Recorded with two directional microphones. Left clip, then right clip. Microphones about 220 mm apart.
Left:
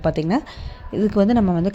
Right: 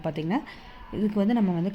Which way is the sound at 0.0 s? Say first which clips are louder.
Left 8 dB; 20° left (ahead or behind).